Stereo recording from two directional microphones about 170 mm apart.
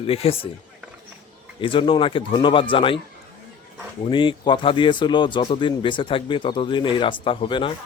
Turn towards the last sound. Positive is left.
turn(degrees=30)  # may be behind; listen again after turning